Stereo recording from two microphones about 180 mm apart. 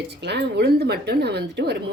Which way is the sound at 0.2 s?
70° right (ahead or behind).